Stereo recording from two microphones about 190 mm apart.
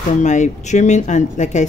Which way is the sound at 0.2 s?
40° left (ahead or behind).